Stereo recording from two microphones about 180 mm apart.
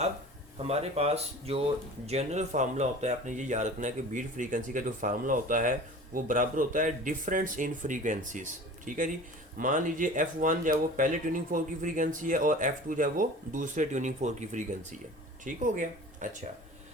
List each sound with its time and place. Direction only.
0.7 s speech: 35° right (ahead or behind)